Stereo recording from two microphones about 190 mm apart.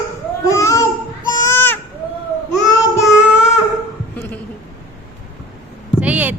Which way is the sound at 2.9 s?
15° left (ahead or behind).